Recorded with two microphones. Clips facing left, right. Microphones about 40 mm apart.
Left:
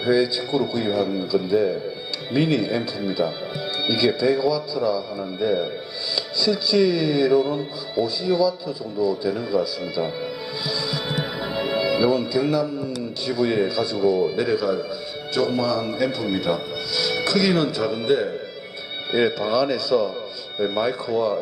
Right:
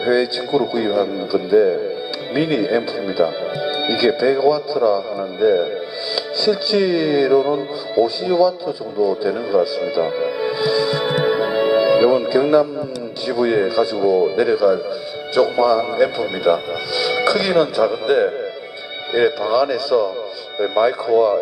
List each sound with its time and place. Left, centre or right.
0.0 s a man's voice: centre; by 12.6 s right
13.2 s a man's voice: centre